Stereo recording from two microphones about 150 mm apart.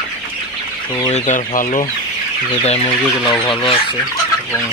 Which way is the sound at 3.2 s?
30° left (ahead or behind).